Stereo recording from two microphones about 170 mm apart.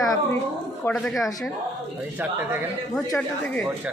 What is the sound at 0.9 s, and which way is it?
Speech, centre (ahead or behind).